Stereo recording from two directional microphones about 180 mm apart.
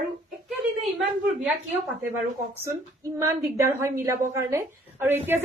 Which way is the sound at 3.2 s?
15° right (ahead or behind).